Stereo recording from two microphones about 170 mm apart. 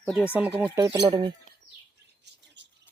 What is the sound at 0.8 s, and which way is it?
Speech, 20° right (ahead or behind).